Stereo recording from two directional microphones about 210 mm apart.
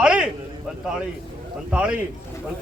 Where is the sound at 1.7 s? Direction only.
5° right (ahead or behind).